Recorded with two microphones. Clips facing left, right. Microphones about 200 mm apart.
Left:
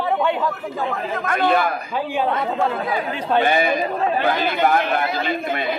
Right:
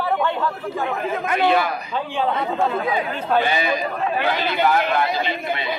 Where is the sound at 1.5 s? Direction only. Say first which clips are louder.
Left 1 dB; 50° left (ahead or behind).